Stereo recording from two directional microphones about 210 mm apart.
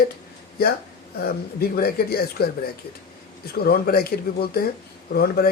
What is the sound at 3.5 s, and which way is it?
Speech, 45° left (ahead or behind).